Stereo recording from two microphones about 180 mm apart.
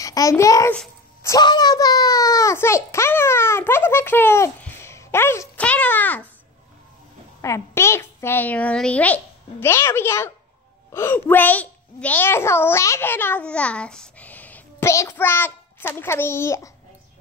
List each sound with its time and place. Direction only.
0.0 s a child's voice: 20° left (ahead or behind)
7.4 s a child's voice: 15° left (ahead or behind)